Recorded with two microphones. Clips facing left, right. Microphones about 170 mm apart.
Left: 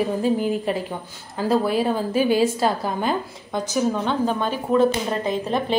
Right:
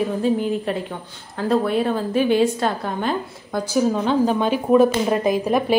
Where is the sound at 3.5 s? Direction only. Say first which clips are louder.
Right 3 dB; 10° right (ahead or behind).